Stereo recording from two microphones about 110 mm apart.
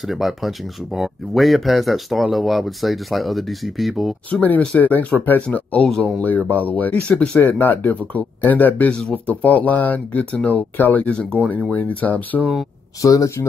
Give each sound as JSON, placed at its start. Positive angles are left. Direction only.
{"t": 0.1, "sound": "speech", "side_deg": 0}
{"t": 4.3, "sound": "speech", "side_deg": 15}
{"t": 13.0, "sound": "speech", "side_deg": 30}